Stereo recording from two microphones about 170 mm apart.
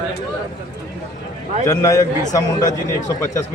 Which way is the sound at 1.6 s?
20° left (ahead or behind).